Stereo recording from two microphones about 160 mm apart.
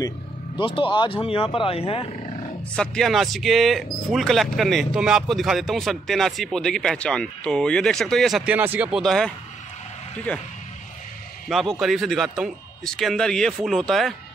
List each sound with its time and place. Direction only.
0.6 s speech: 30° left (ahead or behind)
2.7 s speech: 5° left (ahead or behind)